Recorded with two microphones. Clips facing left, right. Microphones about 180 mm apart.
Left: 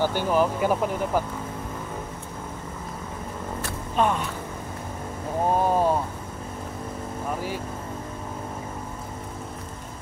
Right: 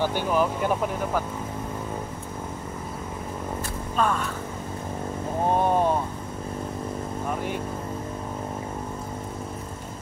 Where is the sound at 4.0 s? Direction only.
20° left (ahead or behind).